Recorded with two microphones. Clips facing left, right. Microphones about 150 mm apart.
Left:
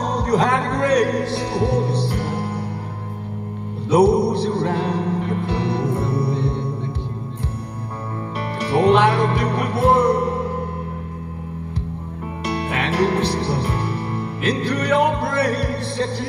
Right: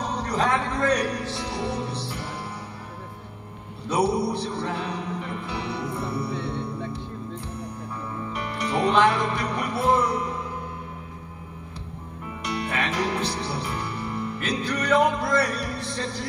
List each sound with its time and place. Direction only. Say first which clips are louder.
0.0 s a man's voice: left 6 dB; 40° left (ahead or behind)
3.9 s a man's voice: left 8 dB; 35° left (ahead or behind)
5.8 s music: left 8 dB; 65° left (ahead or behind)
6.1 s music: left 7 dB; 35° left (ahead or behind)
8.4 s music: left 7 dB; 35° left (ahead or behind)
12.4 s music: left 5 dB; 35° left (ahead or behind)